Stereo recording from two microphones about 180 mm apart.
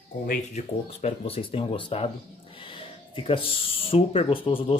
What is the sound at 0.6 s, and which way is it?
Speech, 35° left (ahead or behind).